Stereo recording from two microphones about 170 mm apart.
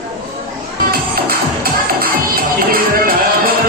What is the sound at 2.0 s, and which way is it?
Music, 60° right (ahead or behind).